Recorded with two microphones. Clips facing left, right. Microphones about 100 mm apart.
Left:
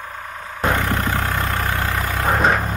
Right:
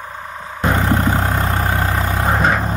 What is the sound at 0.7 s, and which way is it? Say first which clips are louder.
Vehicle: right 8 dB; 30° right (ahead or behind).